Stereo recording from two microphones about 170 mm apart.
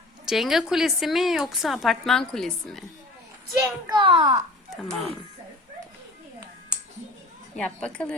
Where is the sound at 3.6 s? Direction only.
25° right (ahead or behind).